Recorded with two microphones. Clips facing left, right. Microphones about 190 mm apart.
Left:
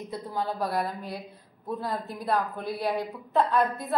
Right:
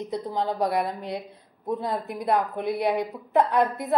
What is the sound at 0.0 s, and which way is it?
Speech, 20° right (ahead or behind).